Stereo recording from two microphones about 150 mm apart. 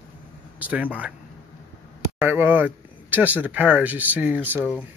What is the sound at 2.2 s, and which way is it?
Speech, 15° right (ahead or behind).